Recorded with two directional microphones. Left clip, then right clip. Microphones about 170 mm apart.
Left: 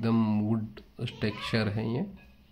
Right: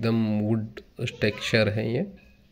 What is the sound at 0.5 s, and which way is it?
Speech, 15° right (ahead or behind).